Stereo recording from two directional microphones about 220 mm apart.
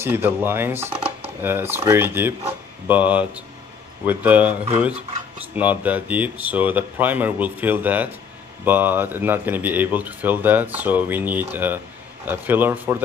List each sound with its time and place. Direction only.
0.0 s speech: 10° right (ahead or behind)
5.6 s speech: 5° right (ahead or behind)